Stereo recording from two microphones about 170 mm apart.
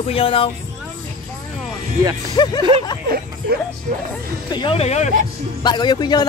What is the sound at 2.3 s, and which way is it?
Speech, 25° left (ahead or behind).